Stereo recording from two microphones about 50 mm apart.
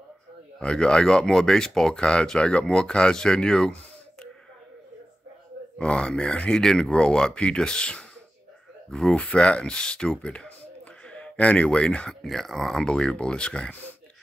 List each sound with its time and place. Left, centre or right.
0.6 s speech: centre
5.8 s speech: left
9.1 s speech: left
12.1 s speech: centre
12.8 s speech: centre